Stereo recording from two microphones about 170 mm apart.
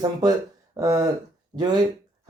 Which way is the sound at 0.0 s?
20° right (ahead or behind).